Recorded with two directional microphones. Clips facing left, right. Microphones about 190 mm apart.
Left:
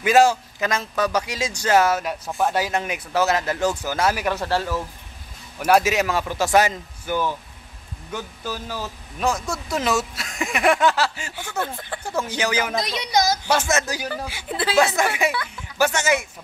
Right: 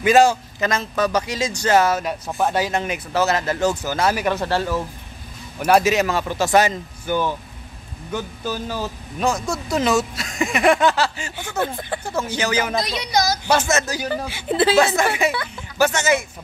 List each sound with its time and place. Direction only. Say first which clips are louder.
0.0 s speech: right 2 dB; 5° left (ahead or behind)
2.2 s speech: right 1 dB; 5° right (ahead or behind)
2.5 s speech: right 2 dB; 10° left (ahead or behind)
11.5 s speech: right 4 dB; 15° right (ahead or behind)
12.0 s speech: left 1 dB; 10° left (ahead or behind)
13.5 s speech: right 2 dB; 10° left (ahead or behind)
14.0 s speech: right 5 dB; 25° right (ahead or behind)
15.0 s speech: right 2 dB; 15° left (ahead or behind)
15.3 s speech: right 2 dB; 30° right (ahead or behind)
15.8 s speech: right 2 dB; 10° left (ahead or behind)